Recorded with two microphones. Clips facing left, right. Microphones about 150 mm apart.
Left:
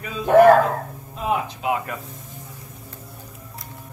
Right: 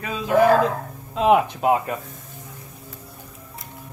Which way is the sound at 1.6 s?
50° right (ahead or behind).